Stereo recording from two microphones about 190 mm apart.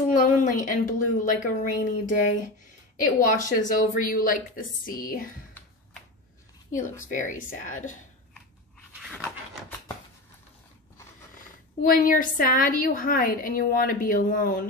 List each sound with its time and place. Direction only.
0.1 s a woman's voice: 45° left (ahead or behind)
3.2 s a woman's voice: 45° left (ahead or behind)
6.7 s a woman's voice: 40° left (ahead or behind)
9.1 s pant: centre (ahead or behind)
11.8 s a woman's voice: 45° left (ahead or behind)